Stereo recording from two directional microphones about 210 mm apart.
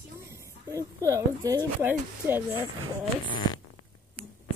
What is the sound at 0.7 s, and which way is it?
Female singing, 15° right (ahead or behind).